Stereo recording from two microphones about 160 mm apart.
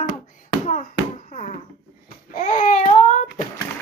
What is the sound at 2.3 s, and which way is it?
Baby cry, 55° left (ahead or behind).